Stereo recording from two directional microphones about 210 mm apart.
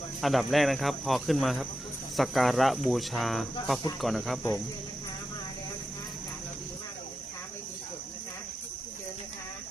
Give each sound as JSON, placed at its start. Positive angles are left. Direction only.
{"t": 0.2, "sound": "speech", "side_deg": 0}